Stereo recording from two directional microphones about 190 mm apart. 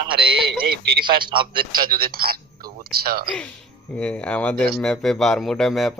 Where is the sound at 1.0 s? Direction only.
25° right (ahead or behind).